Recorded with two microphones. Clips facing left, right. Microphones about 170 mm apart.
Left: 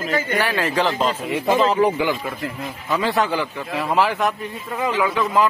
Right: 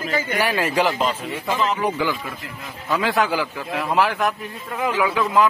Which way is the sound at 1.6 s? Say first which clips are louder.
Left 4 dB; 30° left (ahead or behind).